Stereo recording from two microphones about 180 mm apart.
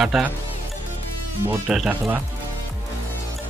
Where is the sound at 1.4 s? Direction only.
5° right (ahead or behind).